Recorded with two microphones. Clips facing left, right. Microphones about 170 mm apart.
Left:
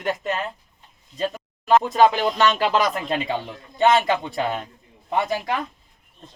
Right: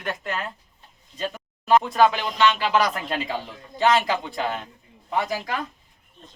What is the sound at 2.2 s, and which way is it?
Speech, 45° left (ahead or behind).